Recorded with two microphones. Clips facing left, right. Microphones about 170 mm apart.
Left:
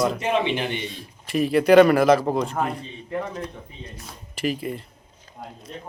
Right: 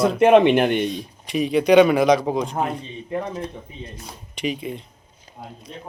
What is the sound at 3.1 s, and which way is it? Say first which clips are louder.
Speech: right 2 dB; 25° right (ahead or behind).